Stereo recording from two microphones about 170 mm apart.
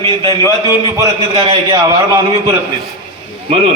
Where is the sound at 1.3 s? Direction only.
30° right (ahead or behind).